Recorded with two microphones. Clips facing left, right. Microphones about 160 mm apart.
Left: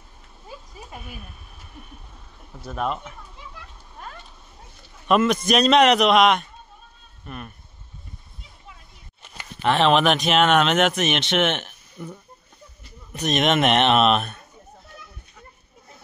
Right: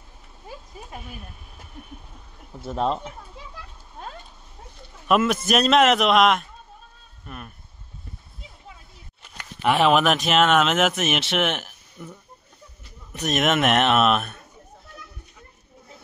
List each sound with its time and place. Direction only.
2.6 s speech: 25° right (ahead or behind)
5.0 s speech: 5° right (ahead or behind)
9.6 s speech: 10° right (ahead or behind)